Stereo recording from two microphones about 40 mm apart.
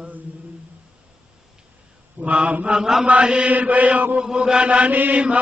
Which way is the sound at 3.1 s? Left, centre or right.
Right.